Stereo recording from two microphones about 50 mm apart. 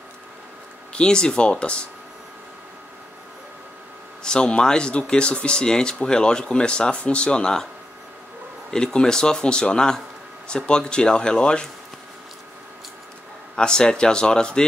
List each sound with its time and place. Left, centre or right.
0.9 s speech: centre
4.2 s speech: centre
8.6 s speech: centre
13.6 s speech: centre